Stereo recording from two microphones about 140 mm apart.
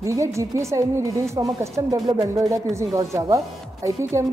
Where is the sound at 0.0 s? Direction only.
20° right (ahead or behind).